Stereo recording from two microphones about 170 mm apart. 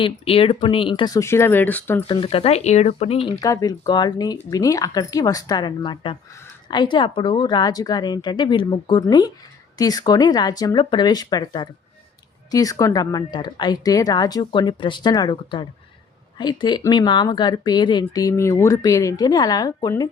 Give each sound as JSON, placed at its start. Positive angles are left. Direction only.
{"t": 0.0, "sound": "speech", "side_deg": 35}
{"t": 2.0, "sound": "speech", "side_deg": 30}
{"t": 3.4, "sound": "speech", "side_deg": 20}